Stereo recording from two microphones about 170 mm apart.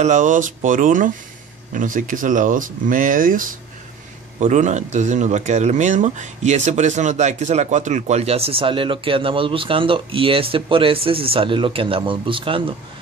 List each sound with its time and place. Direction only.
0.0 s speech: 45° right (ahead or behind); by 12.7 s 30° right (ahead or behind)